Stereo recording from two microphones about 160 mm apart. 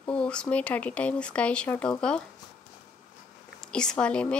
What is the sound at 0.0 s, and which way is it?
Speech, 5° left (ahead or behind).